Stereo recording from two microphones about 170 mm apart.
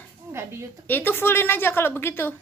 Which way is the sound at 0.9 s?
10° left (ahead or behind).